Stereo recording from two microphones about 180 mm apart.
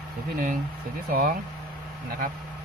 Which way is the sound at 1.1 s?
55° right (ahead or behind).